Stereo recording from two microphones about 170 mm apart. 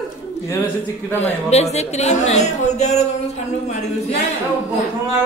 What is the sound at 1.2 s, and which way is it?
Speech, 40° left (ahead or behind).